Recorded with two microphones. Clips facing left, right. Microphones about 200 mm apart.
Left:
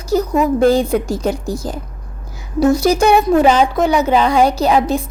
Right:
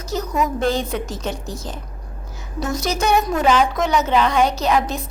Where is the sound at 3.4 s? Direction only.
30° left (ahead or behind).